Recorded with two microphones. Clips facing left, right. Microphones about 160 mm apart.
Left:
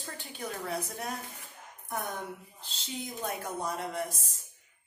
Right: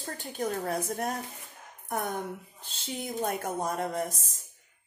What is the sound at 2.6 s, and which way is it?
A woman's voice, 50° right (ahead or behind).